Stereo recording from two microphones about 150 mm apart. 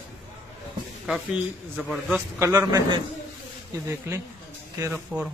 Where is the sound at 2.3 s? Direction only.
20° right (ahead or behind).